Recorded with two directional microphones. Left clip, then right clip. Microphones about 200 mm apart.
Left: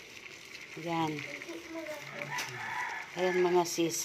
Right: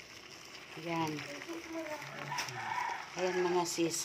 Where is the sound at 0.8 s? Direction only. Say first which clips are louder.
Left 3 dB; 25° left (ahead or behind).